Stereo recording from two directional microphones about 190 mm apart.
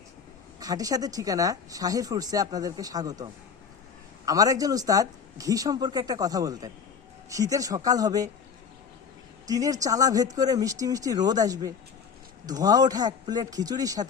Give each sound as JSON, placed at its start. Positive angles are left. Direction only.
{"t": 0.6, "sound": "speech", "side_deg": -20}
{"t": 4.3, "sound": "speech", "side_deg": -20}
{"t": 9.5, "sound": "speech", "side_deg": -20}